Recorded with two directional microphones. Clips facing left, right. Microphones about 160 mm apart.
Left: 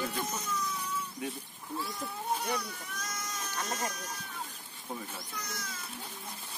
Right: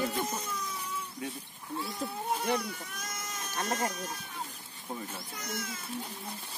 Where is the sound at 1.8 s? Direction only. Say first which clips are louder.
Right 3 dB; 25° right (ahead or behind).